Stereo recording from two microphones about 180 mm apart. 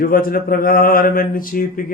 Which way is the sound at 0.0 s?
55° left (ahead or behind).